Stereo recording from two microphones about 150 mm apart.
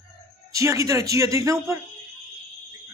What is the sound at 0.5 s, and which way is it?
A man's voice, 20° right (ahead or behind).